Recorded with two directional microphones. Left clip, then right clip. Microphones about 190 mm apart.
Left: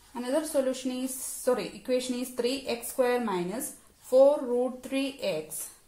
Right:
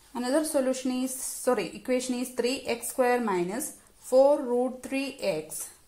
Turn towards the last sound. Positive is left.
turn(degrees=-40)  # may be behind; listen again after turning